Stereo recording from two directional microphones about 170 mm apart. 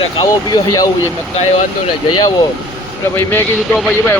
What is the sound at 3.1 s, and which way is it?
Speech, 10° left (ahead or behind).